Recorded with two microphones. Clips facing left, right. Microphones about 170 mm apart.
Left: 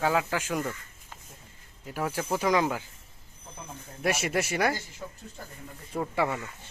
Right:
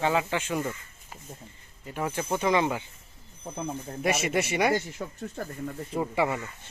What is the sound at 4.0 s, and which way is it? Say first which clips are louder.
Speech: right 1 dB; centre (ahead or behind).